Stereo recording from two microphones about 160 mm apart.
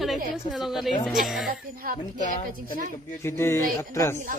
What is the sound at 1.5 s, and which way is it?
Speech, 65° right (ahead or behind).